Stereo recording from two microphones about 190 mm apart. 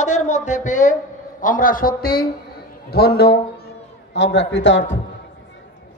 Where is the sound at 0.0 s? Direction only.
40° left (ahead or behind).